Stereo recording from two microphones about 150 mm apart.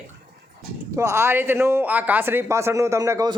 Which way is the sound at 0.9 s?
20° right (ahead or behind).